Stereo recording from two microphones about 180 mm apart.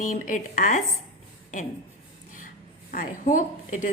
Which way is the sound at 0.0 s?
45° left (ahead or behind).